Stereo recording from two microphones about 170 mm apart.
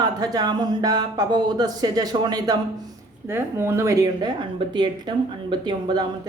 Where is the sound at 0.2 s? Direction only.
25° right (ahead or behind).